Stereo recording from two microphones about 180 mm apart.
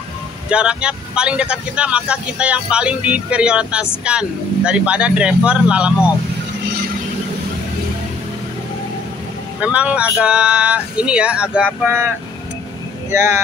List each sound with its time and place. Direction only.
0.5 s speech: 5° right (ahead or behind)
9.6 s speech: 5° right (ahead or behind)
13.1 s speech: 15° right (ahead or behind)